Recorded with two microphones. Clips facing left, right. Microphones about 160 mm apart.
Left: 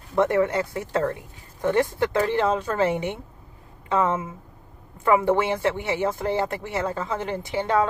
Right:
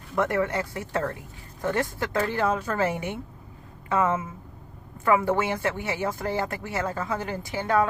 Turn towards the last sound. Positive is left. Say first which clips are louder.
# left 2 dB
turn(degrees=20)  # may be behind; listen again after turning